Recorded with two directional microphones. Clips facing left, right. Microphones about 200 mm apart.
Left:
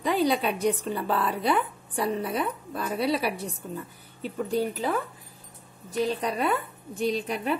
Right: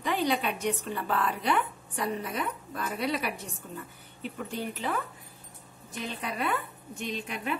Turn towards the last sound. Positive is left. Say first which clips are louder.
# left 7 dB
turn(degrees=35)  # may be behind; listen again after turning